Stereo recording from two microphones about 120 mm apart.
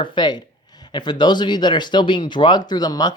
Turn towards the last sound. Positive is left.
turn(degrees=35)  # may be behind; listen again after turning